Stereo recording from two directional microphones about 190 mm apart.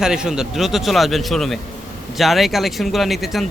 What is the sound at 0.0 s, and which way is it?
Speech, 5° right (ahead or behind).